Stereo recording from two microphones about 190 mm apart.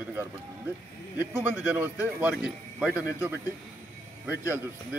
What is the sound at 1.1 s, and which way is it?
Speech, 10° right (ahead or behind).